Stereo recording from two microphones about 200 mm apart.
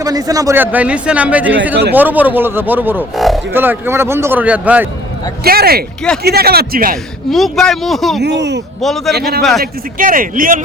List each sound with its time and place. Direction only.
0.0 s a man's voice: 20° right (ahead or behind); by 3.4 s centre (ahead or behind)
3.5 s a man's voice: 10° right (ahead or behind)
5.4 s speech: 50° right (ahead or behind)
6.9 s a man's voice: centre (ahead or behind)
8.2 s speech: 60° right (ahead or behind)
8.8 s a man's voice: centre (ahead or behind)
9.1 s speech: 50° right (ahead or behind)
9.4 s a man's voice: centre (ahead or behind)
10.0 s speech: 45° right (ahead or behind)